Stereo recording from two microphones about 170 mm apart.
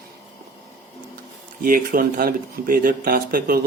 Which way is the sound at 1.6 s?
55° right (ahead or behind).